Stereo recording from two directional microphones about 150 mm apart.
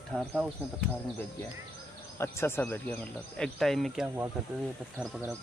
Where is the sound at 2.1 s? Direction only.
15° left (ahead or behind).